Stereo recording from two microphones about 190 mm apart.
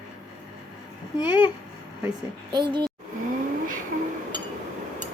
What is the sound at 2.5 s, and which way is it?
Speech, 25° right (ahead or behind).